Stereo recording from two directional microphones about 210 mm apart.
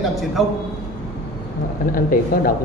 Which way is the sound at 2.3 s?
45° left (ahead or behind).